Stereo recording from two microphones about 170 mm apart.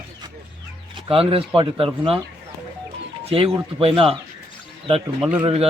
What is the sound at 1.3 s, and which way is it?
Speech, 30° right (ahead or behind).